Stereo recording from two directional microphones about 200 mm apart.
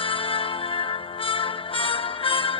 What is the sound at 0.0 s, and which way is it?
Music, 25° left (ahead or behind).